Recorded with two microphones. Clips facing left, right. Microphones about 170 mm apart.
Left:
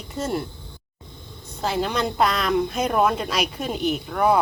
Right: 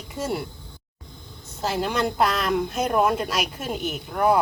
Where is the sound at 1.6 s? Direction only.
5° right (ahead or behind).